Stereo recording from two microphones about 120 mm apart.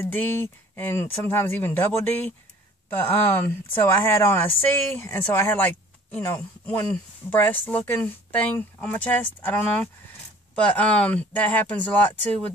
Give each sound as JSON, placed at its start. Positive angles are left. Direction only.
{"t": 0.0, "sound": "speech", "side_deg": 15}